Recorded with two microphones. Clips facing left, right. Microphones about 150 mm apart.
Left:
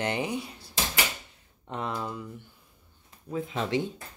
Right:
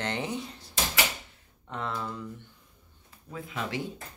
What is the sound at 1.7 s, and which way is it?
Speech, 15° left (ahead or behind).